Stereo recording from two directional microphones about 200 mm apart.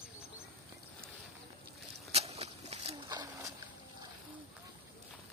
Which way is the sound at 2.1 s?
30° right (ahead or behind).